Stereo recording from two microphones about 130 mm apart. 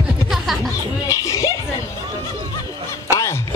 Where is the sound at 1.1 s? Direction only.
25° left (ahead or behind).